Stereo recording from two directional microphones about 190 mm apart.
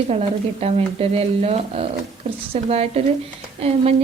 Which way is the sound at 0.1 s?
35° right (ahead or behind).